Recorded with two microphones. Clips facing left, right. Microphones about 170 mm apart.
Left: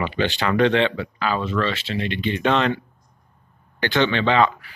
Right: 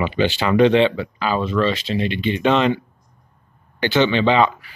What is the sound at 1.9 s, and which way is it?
Speech, 25° right (ahead or behind).